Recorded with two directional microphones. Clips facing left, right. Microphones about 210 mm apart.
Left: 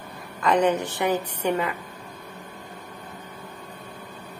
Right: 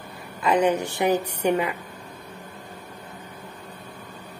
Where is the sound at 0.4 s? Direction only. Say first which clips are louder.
Even; 10° right (ahead or behind).